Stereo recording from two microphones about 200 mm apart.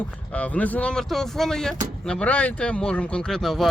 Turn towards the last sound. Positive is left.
turn(degrees=0)  # may be behind; listen again after turning